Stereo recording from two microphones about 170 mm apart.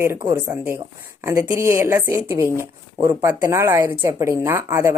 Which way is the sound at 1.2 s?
15° right (ahead or behind).